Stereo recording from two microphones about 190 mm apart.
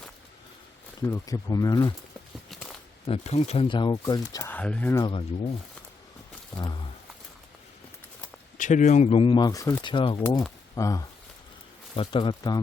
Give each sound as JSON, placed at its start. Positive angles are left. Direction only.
{"t": 1.0, "sound": "speech", "side_deg": 15}
{"t": 2.5, "sound": "a sound", "side_deg": 0}
{"t": 3.1, "sound": "speech", "side_deg": 35}
{"t": 5.0, "sound": "speech", "side_deg": 30}
{"t": 8.5, "sound": "speech", "side_deg": 40}
{"t": 10.8, "sound": "speech", "side_deg": 15}